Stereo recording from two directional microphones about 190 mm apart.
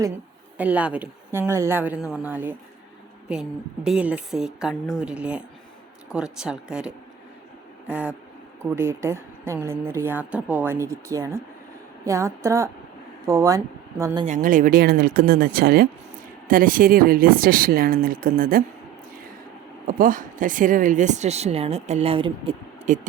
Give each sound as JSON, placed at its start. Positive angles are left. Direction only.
{"t": 0.5, "sound": "a woman's voice", "side_deg": -10}
{"t": 14.3, "sound": "speech", "side_deg": -45}
{"t": 19.9, "sound": "speech", "side_deg": -45}
{"t": 22.9, "sound": "speech", "side_deg": -40}